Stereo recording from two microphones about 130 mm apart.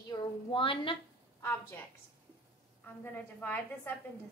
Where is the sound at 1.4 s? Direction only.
15° left (ahead or behind).